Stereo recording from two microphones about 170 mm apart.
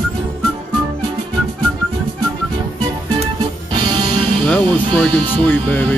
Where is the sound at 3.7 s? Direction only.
25° right (ahead or behind).